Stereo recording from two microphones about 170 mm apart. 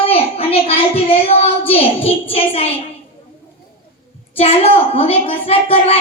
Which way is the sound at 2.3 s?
35° left (ahead or behind).